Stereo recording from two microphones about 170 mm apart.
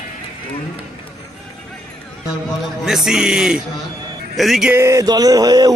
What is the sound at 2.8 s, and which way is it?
Speech, centre (ahead or behind).